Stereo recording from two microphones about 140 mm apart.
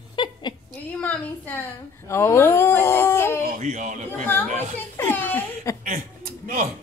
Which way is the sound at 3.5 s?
60° right (ahead or behind).